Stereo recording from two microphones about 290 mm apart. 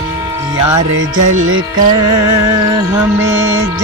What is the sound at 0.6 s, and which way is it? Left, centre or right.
Music, centre.